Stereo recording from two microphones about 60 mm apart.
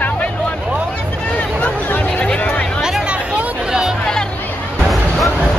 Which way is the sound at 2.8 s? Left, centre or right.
Centre.